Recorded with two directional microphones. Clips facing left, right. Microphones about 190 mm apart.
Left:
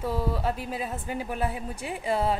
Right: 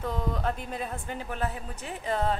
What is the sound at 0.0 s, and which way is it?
Speech, 5° left (ahead or behind).